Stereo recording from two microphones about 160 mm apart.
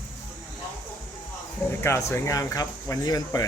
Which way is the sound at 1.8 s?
15° left (ahead or behind).